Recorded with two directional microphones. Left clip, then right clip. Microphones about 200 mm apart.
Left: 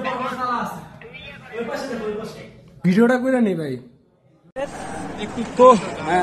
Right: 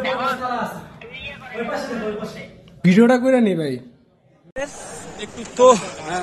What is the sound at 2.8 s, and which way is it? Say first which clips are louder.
Speech: right 3 dB; 5° right (ahead or behind).